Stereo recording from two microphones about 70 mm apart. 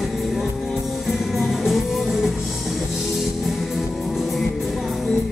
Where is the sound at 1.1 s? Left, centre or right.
Centre.